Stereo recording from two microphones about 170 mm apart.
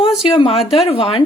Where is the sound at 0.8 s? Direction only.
35° left (ahead or behind).